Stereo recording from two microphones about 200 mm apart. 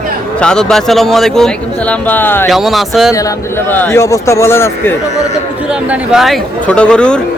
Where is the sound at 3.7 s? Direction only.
10° left (ahead or behind).